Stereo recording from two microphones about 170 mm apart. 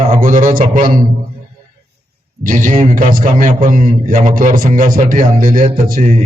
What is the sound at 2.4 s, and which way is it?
A man's voice, 50° right (ahead or behind).